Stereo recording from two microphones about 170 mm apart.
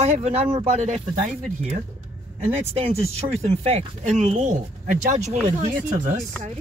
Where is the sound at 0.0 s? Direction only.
40° right (ahead or behind).